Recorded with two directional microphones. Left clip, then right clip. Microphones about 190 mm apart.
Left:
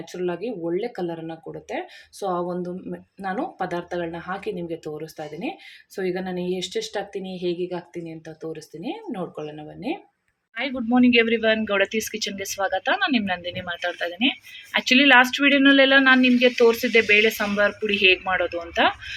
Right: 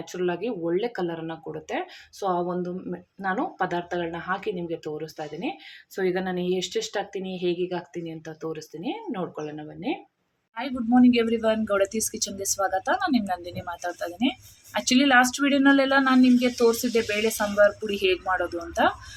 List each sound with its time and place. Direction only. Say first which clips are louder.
0.0 s speech: even; centre (ahead or behind)